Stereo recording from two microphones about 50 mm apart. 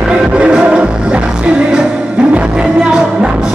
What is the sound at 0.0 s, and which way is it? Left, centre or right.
Music, centre.